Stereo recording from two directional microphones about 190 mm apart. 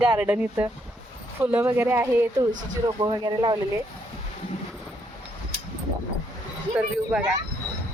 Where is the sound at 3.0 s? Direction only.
25° right (ahead or behind).